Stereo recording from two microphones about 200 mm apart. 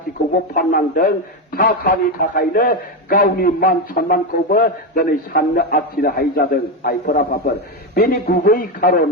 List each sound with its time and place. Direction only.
0.5 s a man's voice: 45° left (ahead or behind)